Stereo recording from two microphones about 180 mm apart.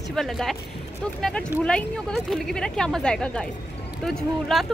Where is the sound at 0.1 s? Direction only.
Centre (ahead or behind).